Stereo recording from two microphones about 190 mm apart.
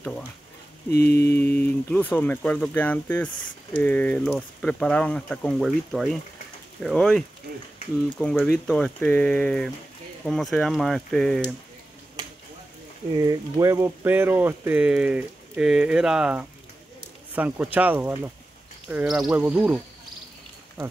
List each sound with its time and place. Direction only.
0.9 s mantra: 55° left (ahead or behind)
1.3 s speech: 10° left (ahead or behind)
8.4 s speech: 5° left (ahead or behind)
13.2 s speech: 15° right (ahead or behind)